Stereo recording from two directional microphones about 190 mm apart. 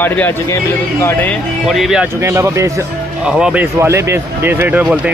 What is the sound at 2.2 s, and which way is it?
Speech, 15° right (ahead or behind).